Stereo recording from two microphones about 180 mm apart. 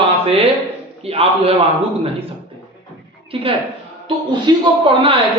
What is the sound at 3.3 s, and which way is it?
A man's voice, 30° right (ahead or behind).